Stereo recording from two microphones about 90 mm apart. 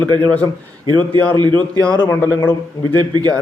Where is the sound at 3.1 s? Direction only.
45° right (ahead or behind).